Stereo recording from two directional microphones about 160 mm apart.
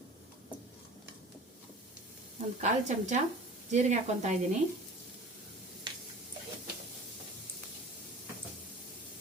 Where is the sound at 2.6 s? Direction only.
45° right (ahead or behind).